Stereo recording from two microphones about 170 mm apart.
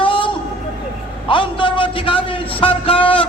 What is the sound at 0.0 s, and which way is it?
Vehicle, 30° left (ahead or behind).